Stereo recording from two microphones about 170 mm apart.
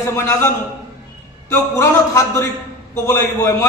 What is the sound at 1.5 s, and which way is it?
A man's voice, 15° left (ahead or behind).